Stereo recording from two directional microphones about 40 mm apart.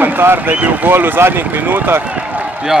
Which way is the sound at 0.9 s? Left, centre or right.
Right.